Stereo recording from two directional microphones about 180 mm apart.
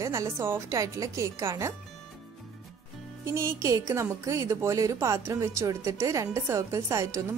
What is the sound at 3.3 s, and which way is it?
A woman's voice, 15° right (ahead or behind).